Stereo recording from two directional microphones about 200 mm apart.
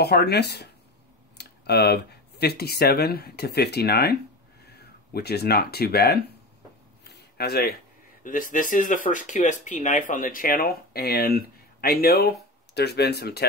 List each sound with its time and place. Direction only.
0.0 s speech: 55° left (ahead or behind)
7.1 s a sound: 55° left (ahead or behind)
8.2 s speech: 40° left (ahead or behind)